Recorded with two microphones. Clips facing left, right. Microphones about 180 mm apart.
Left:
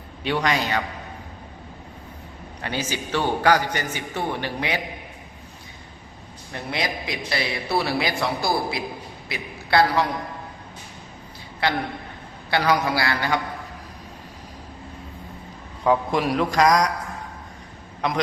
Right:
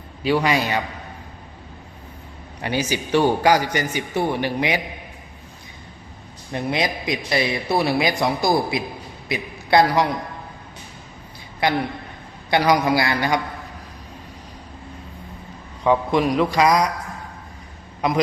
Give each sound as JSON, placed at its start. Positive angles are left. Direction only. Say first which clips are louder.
{"t": 0.2, "sound": "a man's voice", "louder": "right 4 dB", "side_deg": -5}
{"t": 2.6, "sound": "a man's voice", "louder": "right 5 dB", "side_deg": -15}
{"t": 6.5, "sound": "a man's voice", "louder": "right 5 dB", "side_deg": -20}
{"t": 11.6, "sound": "a man's voice", "louder": "right 3 dB", "side_deg": -15}
{"t": 15.8, "sound": "a man's voice", "louder": "right 2 dB", "side_deg": 0}